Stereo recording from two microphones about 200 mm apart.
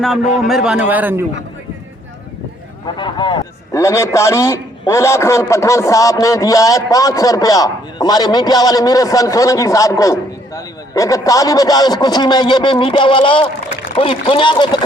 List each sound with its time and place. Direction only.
0.4 s a man's voice: centre (ahead or behind)
2.8 s a man's voice: 25° left (ahead or behind)